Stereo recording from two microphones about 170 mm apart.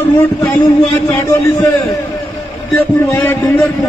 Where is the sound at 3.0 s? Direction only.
20° left (ahead or behind).